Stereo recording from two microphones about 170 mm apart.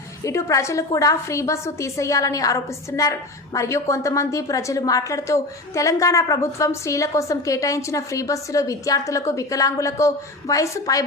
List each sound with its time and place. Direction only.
0.3 s a woman's voice: 15° left (ahead or behind)